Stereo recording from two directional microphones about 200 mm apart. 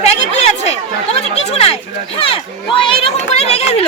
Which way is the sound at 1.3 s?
30° left (ahead or behind).